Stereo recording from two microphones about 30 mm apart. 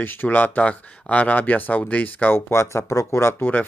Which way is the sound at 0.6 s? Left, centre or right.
Left.